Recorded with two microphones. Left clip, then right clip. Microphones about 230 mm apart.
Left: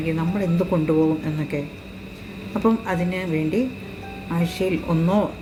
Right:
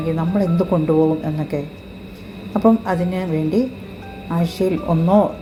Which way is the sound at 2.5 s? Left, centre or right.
Centre.